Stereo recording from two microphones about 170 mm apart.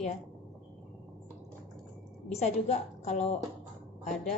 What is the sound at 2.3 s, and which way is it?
A woman's voice, 40° left (ahead or behind).